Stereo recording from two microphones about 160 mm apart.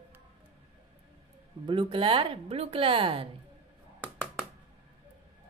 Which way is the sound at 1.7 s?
30° right (ahead or behind).